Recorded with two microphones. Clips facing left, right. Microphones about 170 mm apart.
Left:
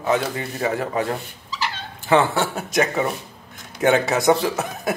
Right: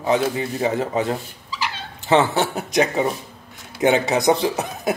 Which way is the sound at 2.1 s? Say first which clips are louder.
Right 1 dB; 20° right (ahead or behind).